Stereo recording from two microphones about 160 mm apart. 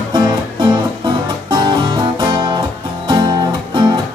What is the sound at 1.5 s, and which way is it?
Music, 30° right (ahead or behind).